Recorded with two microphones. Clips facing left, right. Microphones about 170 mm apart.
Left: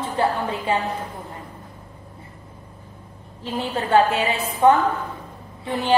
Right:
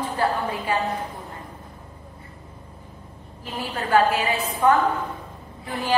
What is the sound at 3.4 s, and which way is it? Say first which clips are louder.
A woman's voice: left 4 dB; 25° left (ahead or behind).